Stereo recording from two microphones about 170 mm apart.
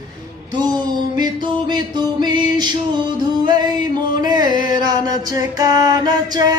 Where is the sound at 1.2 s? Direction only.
25° right (ahead or behind).